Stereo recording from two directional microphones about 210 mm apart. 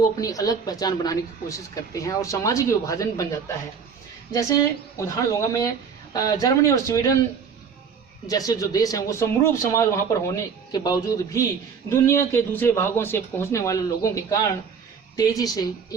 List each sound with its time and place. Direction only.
0.2 s a woman's voice: 15° left (ahead or behind)
8.3 s a woman's voice: 15° left (ahead or behind)